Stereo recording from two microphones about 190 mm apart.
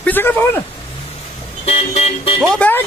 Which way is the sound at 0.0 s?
10° left (ahead or behind).